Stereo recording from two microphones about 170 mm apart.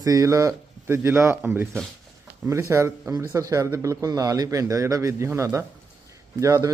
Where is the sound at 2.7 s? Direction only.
15° right (ahead or behind).